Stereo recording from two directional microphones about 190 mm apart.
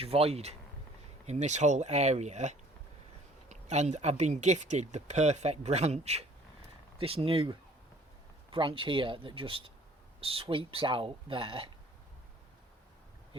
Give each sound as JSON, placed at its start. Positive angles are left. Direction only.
{"t": 0.0, "sound": "speech", "side_deg": -30}
{"t": 8.5, "sound": "speech", "side_deg": -25}